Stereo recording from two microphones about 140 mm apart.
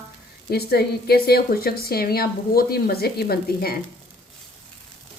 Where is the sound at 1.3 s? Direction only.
90° left.